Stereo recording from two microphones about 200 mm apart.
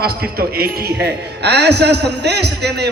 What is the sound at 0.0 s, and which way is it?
A man's voice, 50° right (ahead or behind).